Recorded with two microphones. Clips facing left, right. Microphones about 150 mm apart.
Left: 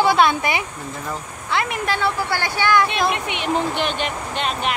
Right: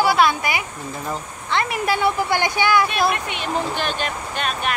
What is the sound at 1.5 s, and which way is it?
Speech, 5° left (ahead or behind).